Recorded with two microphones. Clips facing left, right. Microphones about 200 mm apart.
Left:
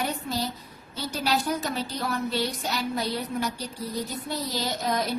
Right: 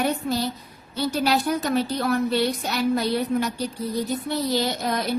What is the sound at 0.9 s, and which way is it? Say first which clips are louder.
A woman's voice: right 5 dB; 60° right (ahead or behind).